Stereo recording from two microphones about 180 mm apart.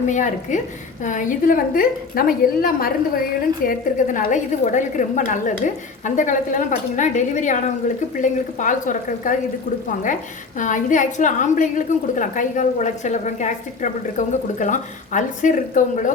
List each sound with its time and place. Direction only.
0.1 s a woman's voice: 45° left (ahead or behind)
10.6 s a woman's voice: 45° left (ahead or behind)